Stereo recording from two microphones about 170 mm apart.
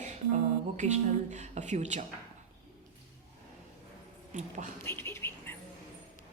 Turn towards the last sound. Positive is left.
turn(degrees=15)  # may be behind; listen again after turning